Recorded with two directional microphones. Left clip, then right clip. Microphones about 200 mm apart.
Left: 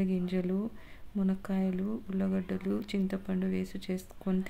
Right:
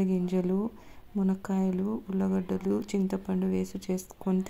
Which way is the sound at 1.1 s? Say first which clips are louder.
Right 3 dB; 10° left (ahead or behind).